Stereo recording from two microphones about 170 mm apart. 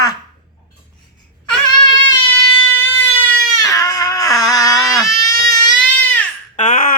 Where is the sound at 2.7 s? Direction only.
15° left (ahead or behind).